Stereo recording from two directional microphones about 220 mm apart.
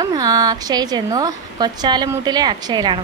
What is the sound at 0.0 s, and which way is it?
A woman's voice, 20° right (ahead or behind).